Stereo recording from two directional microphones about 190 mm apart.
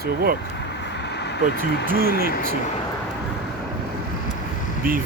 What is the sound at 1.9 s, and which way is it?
Speech, 50° right (ahead or behind).